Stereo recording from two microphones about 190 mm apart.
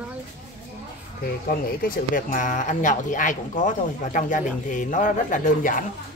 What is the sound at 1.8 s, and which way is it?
Speech, 45° left (ahead or behind).